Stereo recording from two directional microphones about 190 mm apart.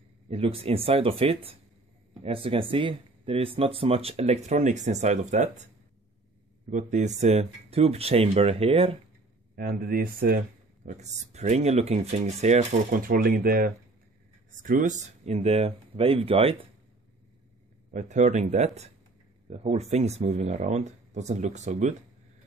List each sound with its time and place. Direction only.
0.3 s speech: 30° right (ahead or behind)
6.7 s speech: 40° right (ahead or behind)
9.6 s speech: 50° right (ahead or behind)
11.0 s speech: 35° right (ahead or behind)
17.9 s speech: 40° right (ahead or behind)